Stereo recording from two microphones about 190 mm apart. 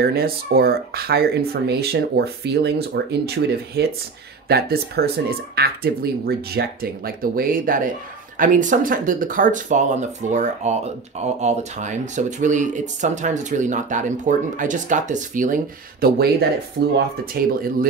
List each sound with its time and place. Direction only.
0.0 s speech: 55° right (ahead or behind)
16.0 s speech: 55° right (ahead or behind)